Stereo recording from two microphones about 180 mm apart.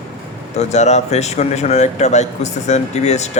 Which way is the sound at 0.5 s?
40° left (ahead or behind).